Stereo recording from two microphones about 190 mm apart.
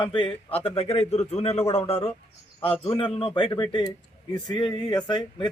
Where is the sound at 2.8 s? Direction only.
25° left (ahead or behind).